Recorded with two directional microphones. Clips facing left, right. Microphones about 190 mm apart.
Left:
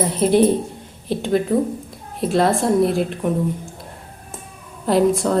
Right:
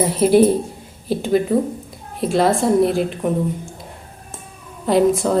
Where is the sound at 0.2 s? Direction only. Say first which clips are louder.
Right 2 dB; 5° right (ahead or behind).